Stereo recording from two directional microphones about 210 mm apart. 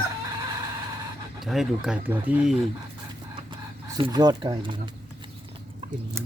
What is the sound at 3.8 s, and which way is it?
Speech, 20° right (ahead or behind).